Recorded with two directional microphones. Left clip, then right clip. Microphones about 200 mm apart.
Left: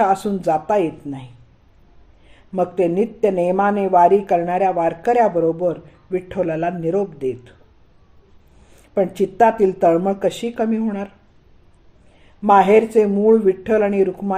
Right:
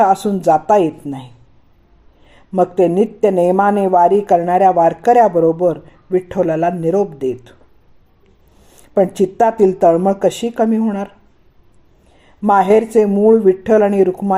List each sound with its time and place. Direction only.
0.0 s speech: 30° right (ahead or behind)
2.3 s speech: 30° right (ahead or behind)
9.0 s speech: 30° right (ahead or behind)
12.4 s speech: 30° right (ahead or behind)